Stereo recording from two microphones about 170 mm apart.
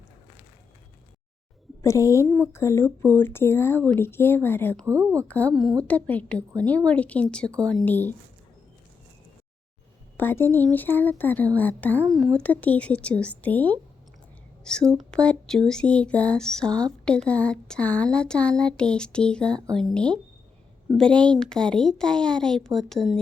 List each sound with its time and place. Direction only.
1.8 s speech: 20° left (ahead or behind)
4.9 s a woman's voice: 15° right (ahead or behind)
5.9 s speech: 10° left (ahead or behind)
10.2 s speech: 15° left (ahead or behind)